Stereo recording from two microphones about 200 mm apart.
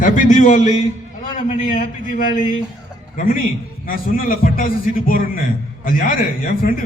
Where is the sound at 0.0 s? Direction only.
40° left (ahead or behind).